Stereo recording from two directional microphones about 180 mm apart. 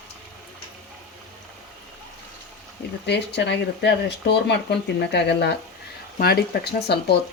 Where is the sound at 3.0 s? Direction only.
70° left (ahead or behind).